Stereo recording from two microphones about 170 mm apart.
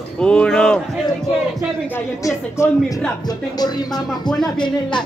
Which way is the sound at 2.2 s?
15° left (ahead or behind).